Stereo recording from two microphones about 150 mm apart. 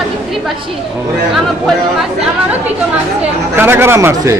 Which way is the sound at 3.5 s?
15° right (ahead or behind).